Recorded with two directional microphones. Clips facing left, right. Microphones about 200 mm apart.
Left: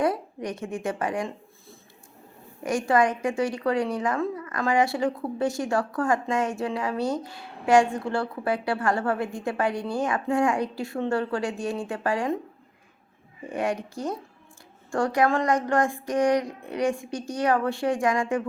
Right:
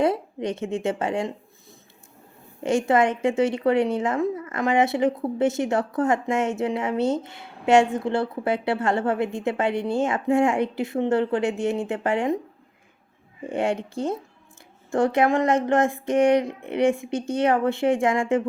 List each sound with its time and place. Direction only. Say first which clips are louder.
0.0 s a woman's voice: right 3 dB; 25° right (ahead or behind)
2.6 s a woman's voice: right 2 dB; 25° right (ahead or behind)
13.5 s a woman's voice: right 3 dB; 25° right (ahead or behind)